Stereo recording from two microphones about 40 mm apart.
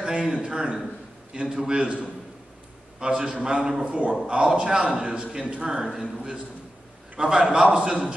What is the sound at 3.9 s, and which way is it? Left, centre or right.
Speech, right.